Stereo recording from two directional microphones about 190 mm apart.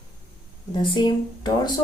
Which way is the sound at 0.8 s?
25° left (ahead or behind).